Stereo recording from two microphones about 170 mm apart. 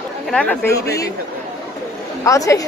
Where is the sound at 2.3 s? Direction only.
20° left (ahead or behind).